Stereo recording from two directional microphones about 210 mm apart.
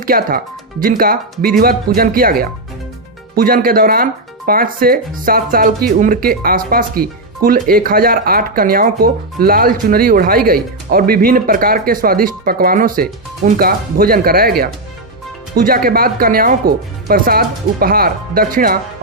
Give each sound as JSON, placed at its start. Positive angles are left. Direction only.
{"t": 0.0, "sound": "speech", "side_deg": -40}